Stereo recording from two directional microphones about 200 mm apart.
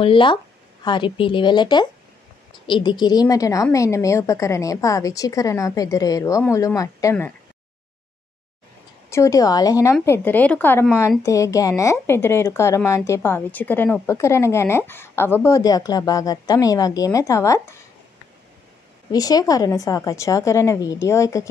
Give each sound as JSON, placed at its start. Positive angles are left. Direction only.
{"t": 0.0, "sound": "a woman's voice", "side_deg": 25}
{"t": 9.1, "sound": "speech", "side_deg": 15}
{"t": 19.1, "sound": "speech", "side_deg": 20}